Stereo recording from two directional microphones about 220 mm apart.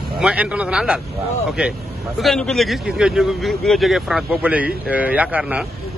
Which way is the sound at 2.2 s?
Centre (ahead or behind).